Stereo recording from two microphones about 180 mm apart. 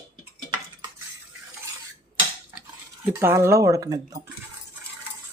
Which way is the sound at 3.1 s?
15° right (ahead or behind).